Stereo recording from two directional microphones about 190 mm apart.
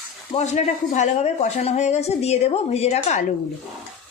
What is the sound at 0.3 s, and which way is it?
A woman's voice, 35° left (ahead or behind).